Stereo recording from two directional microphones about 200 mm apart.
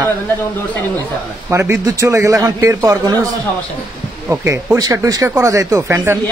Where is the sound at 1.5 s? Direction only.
15° right (ahead or behind).